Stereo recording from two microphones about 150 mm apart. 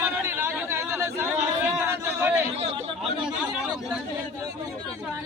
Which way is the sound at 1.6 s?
15° right (ahead or behind).